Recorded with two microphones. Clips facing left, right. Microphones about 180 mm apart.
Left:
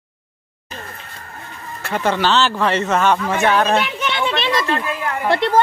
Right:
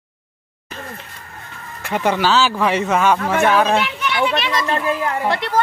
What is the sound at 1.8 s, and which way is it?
Speech, 15° right (ahead or behind).